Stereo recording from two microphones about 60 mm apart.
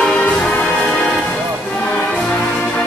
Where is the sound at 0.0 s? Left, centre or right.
Centre.